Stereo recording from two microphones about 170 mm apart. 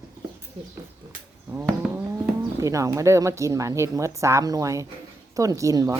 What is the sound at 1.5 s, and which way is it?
Speech, 10° right (ahead or behind).